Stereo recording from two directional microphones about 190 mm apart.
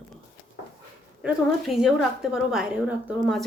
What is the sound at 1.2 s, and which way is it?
Speech, centre (ahead or behind).